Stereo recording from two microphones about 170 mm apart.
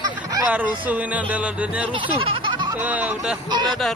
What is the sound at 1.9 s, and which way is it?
Speech, 30° right (ahead or behind).